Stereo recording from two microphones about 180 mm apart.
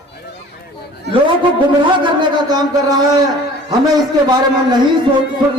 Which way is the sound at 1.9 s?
25° right (ahead or behind).